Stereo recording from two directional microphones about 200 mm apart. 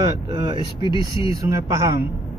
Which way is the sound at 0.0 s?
25° right (ahead or behind).